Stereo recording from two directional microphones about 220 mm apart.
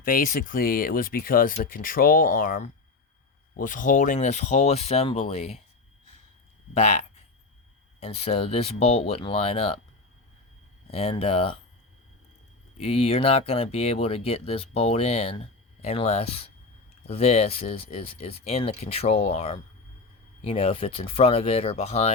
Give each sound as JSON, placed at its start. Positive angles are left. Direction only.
{"t": 0.0, "sound": "speech", "side_deg": 40}
{"t": 6.7, "sound": "speech", "side_deg": 30}
{"t": 8.0, "sound": "speech", "side_deg": 30}
{"t": 10.9, "sound": "speech", "side_deg": 25}
{"t": 12.7, "sound": "speech", "side_deg": 25}